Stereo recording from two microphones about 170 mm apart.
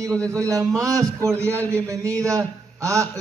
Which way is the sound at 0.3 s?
20° right (ahead or behind).